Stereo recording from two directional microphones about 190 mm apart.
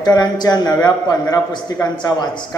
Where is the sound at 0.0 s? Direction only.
20° left (ahead or behind).